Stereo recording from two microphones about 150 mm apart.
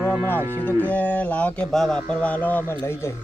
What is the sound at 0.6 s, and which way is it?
Speech, 10° left (ahead or behind).